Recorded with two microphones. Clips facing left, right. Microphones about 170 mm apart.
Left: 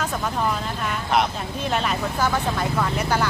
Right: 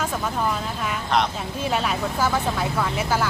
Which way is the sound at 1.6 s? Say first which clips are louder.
Even; 5° right (ahead or behind).